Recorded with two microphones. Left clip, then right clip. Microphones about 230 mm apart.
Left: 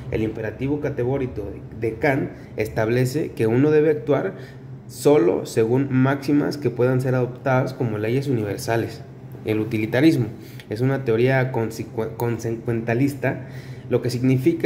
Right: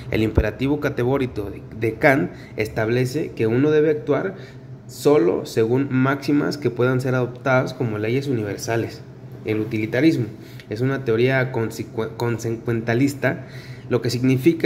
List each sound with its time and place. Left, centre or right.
0.1 s a man's voice: centre